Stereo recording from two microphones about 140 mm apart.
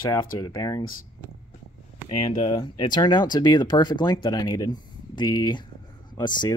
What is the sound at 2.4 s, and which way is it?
Speech, 30° left (ahead or behind).